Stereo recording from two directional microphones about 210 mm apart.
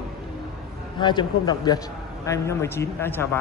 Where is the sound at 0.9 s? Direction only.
20° left (ahead or behind).